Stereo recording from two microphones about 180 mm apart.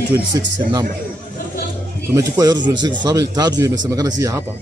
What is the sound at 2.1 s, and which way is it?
A man's voice, 20° right (ahead or behind).